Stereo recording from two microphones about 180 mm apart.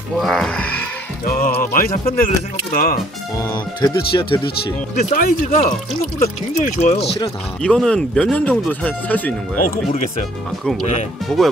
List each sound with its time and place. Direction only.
0.2 s speech: centre (ahead or behind)
1.2 s music: 55° left (ahead or behind)
1.6 s speech: 50° left (ahead or behind)
3.3 s speech: 25° left (ahead or behind)
4.9 s speech: 40° left (ahead or behind)
7.6 s speech: 5° left (ahead or behind)
11.3 s speech: 5° left (ahead or behind)